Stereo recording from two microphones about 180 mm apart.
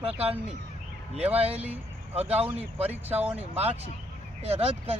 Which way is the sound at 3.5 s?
35° right (ahead or behind).